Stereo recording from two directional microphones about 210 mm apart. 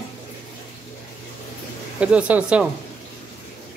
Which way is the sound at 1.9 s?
5° right (ahead or behind).